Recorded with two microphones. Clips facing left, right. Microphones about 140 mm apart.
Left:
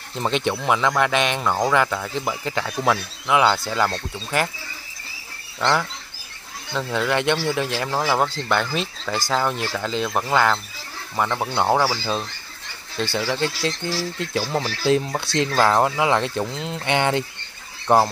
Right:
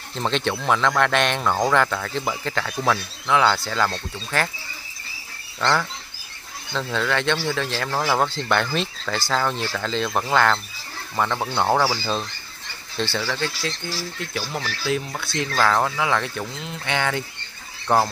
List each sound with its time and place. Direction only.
0.1 s speech: 10° left (ahead or behind)
5.6 s speech: 15° left (ahead or behind)
13.1 s speech: 20° left (ahead or behind)
14.2 s speech: 30° left (ahead or behind)
15.3 s speech: 20° left (ahead or behind)